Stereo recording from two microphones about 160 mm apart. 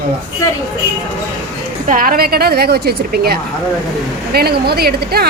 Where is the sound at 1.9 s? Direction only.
60° right (ahead or behind); by 5.3 s 80° right.